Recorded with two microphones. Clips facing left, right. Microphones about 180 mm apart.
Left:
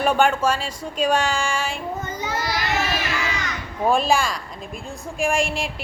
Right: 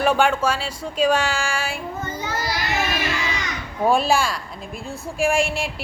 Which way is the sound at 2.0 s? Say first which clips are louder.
Even; 20° left (ahead or behind).